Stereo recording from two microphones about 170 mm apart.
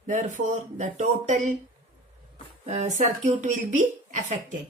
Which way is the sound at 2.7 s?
45° right (ahead or behind).